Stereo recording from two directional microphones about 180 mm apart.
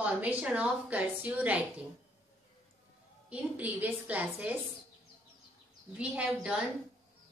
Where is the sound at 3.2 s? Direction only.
10° right (ahead or behind).